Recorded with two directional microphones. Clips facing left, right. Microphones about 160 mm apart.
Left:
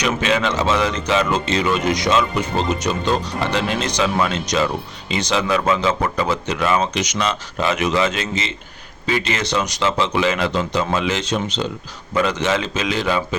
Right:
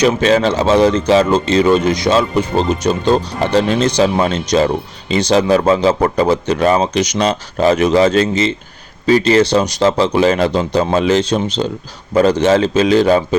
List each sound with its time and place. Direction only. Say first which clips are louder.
0.0 s speech: right 7 dB; 35° right (ahead or behind)